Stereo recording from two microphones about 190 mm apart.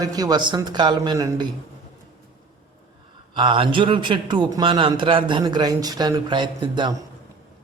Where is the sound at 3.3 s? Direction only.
25° right (ahead or behind).